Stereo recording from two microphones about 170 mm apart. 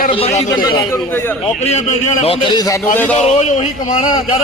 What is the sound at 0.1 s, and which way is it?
Speech, 35° left (ahead or behind).